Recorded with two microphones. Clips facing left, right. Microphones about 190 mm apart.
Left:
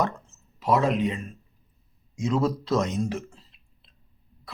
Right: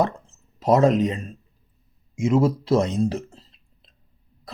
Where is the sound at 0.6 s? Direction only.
40° right (ahead or behind).